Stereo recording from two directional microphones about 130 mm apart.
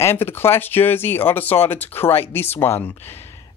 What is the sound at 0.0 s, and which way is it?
Speech, 20° left (ahead or behind).